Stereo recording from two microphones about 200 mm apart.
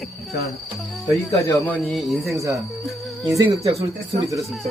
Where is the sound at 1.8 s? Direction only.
Centre (ahead or behind).